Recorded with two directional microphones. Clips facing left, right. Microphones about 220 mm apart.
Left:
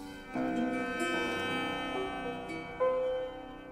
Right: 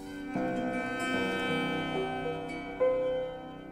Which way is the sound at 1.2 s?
40° right (ahead or behind).